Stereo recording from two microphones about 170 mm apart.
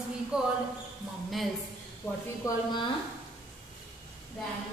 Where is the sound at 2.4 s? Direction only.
25° left (ahead or behind).